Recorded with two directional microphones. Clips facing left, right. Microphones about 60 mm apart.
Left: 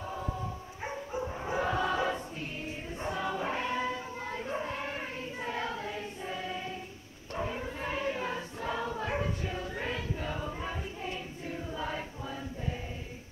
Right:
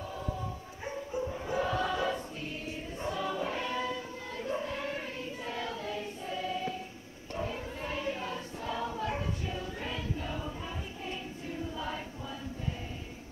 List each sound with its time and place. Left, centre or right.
0.8 s dog: left
3.0 s choir: left